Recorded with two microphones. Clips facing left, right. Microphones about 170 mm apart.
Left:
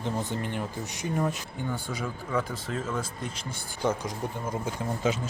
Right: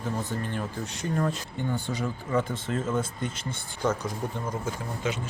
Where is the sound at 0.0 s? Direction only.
15° left (ahead or behind); by 2.4 s centre (ahead or behind).